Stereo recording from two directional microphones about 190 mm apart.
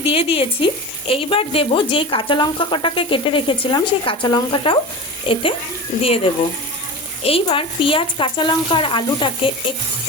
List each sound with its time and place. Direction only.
0.0 s speech: 30° left (ahead or behind)